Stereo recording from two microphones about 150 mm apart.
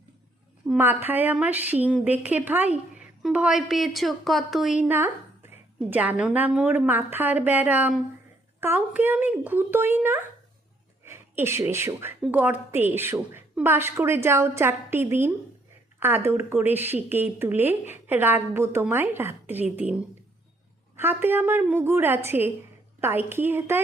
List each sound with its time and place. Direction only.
0.8 s a woman's voice: 15° right (ahead or behind)